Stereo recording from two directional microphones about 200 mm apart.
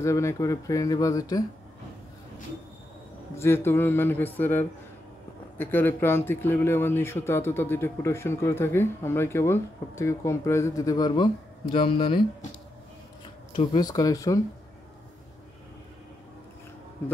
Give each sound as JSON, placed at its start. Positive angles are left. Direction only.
{"t": 0.0, "sound": "a man's voice", "side_deg": 15}
{"t": 3.3, "sound": "a man's voice", "side_deg": 10}
{"t": 13.6, "sound": "a man's voice", "side_deg": 20}